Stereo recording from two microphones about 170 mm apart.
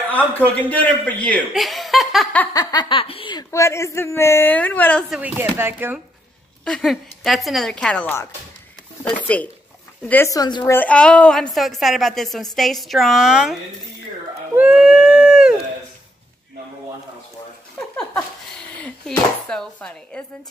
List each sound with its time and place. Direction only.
0.7 s a woman's voice: 10° left (ahead or behind)
2.5 s a man's voice: 25° left (ahead or behind)
5.1 s speech: 10° right (ahead or behind)
6.6 s a woman's voice: 5° left (ahead or behind)
10.0 s speech: 15° left (ahead or behind)
10.6 s a woman's voice: 10° left (ahead or behind)
14.5 s a sound: 5° right (ahead or behind)
17.7 s a woman's voice: 5° left (ahead or behind)